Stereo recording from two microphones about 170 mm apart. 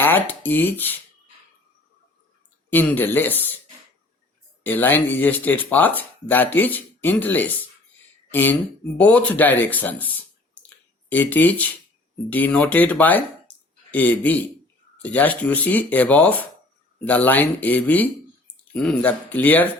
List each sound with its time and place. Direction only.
0.0 s speech: 10° left (ahead or behind)
2.6 s speech: 10° left (ahead or behind)
4.6 s speech: 10° left (ahead or behind)
11.1 s speech: 10° left (ahead or behind)
13.5 s a sound: 10° left (ahead or behind)
13.9 s speech: 10° left (ahead or behind)